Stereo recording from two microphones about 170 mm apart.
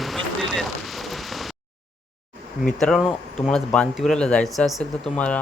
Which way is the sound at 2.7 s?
5° left (ahead or behind).